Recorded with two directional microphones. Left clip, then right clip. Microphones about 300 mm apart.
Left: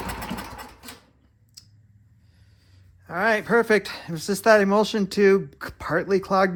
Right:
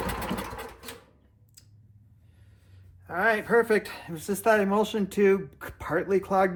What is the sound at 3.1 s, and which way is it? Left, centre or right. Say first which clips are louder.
Speech: left 3 dB; left.